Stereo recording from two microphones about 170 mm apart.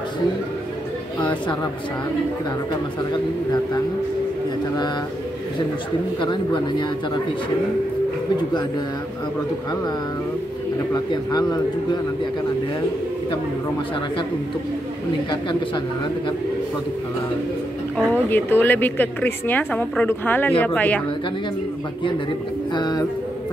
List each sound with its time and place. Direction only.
6.2 s speech: 25° left (ahead or behind)
10.9 s speech: 20° left (ahead or behind)
17.9 s a woman's voice: 10° left (ahead or behind)
22.8 s speech: 25° left (ahead or behind)